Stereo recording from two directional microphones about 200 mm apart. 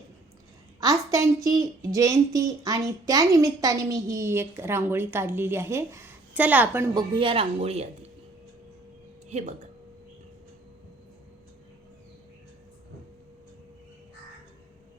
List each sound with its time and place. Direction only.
0.8 s a woman's voice: 15° right (ahead or behind)
6.9 s speech: 25° right (ahead or behind)